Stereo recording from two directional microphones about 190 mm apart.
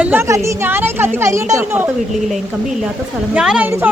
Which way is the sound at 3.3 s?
5° right (ahead or behind).